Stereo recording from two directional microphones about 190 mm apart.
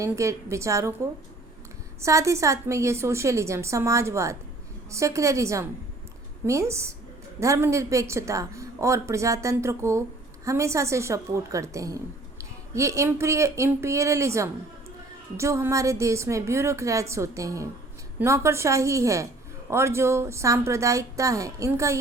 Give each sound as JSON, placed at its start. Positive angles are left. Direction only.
{"t": 0.0, "sound": "a woman's voice", "side_deg": -15}
{"t": 2.0, "sound": "a woman's voice", "side_deg": -15}